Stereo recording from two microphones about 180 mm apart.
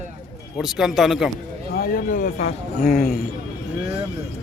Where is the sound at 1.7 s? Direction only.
55° left (ahead or behind).